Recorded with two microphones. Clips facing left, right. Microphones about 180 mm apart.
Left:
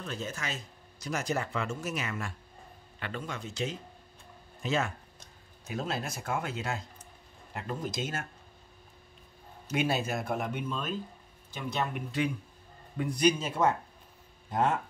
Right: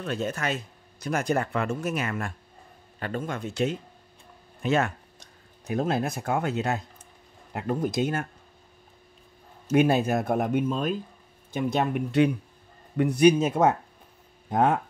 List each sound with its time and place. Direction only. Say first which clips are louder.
0.0 s speech: right 8 dB; 60° right (ahead or behind)
9.7 s speech: right 9 dB; 55° right (ahead or behind)
11.5 s speech: right 8 dB; 55° right (ahead or behind)